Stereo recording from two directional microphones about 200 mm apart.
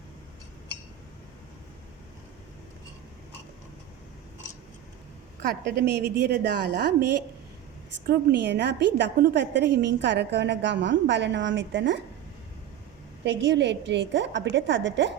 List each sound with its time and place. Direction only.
5.4 s a woman's voice: 55° right (ahead or behind)
13.2 s a woman's voice: 65° right (ahead or behind)